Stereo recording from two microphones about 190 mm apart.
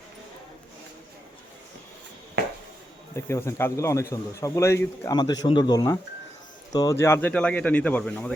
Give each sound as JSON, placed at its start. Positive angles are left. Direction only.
{"t": 3.2, "sound": "speech", "side_deg": 15}